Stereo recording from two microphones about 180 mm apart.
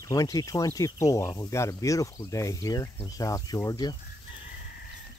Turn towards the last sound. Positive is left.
turn(degrees=20)  # may be behind; listen again after turning